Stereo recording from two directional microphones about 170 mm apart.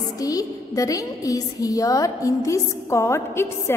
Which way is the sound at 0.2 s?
20° left (ahead or behind).